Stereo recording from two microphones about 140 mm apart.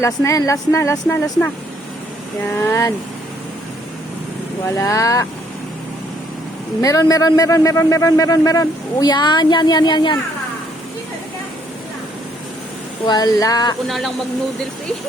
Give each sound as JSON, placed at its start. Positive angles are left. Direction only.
{"t": 0.0, "sound": "a man's voice", "side_deg": 20}
{"t": 4.6, "sound": "a man's voice", "side_deg": 20}
{"t": 6.8, "sound": "a man's voice", "side_deg": 25}
{"t": 13.1, "sound": "a man's voice", "side_deg": 30}
{"t": 13.8, "sound": "speech", "side_deg": 0}